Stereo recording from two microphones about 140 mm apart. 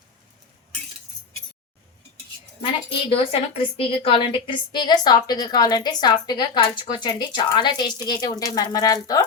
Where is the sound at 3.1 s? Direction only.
40° left (ahead or behind).